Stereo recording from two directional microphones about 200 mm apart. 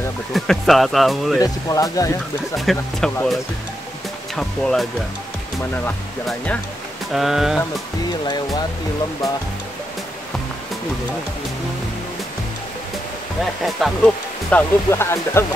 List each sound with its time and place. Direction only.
0.3 s speech: centre (ahead or behind)
1.4 s speech: 15° left (ahead or behind)
2.5 s speech: centre (ahead or behind)
4.4 s speech: 5° left (ahead or behind)
5.9 s speech: 5° left (ahead or behind)
13.7 s speech: centre (ahead or behind)